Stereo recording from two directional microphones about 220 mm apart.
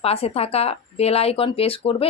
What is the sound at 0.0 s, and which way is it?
Speech, 25° left (ahead or behind).